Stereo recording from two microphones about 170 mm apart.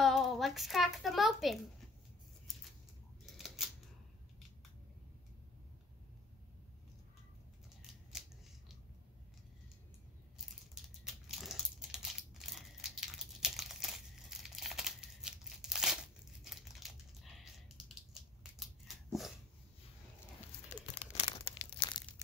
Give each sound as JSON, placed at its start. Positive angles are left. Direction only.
{"t": 0.0, "sound": "a sound", "side_deg": 0}
{"t": 3.3, "sound": "scissors", "side_deg": 0}
{"t": 8.1, "sound": "scissors", "side_deg": -5}
{"t": 10.3, "sound": "crumpling", "side_deg": -5}
{"t": 18.4, "sound": "a sound", "side_deg": 0}
{"t": 20.7, "sound": "crumpling", "side_deg": 45}
{"t": 21.1, "sound": "crumpling", "side_deg": 35}